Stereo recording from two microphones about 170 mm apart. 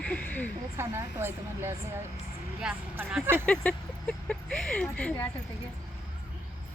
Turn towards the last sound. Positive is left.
turn(degrees=10)  # may be behind; listen again after turning